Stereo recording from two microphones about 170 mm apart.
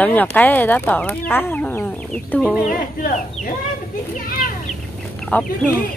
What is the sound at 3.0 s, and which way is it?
Speech, 50° left (ahead or behind).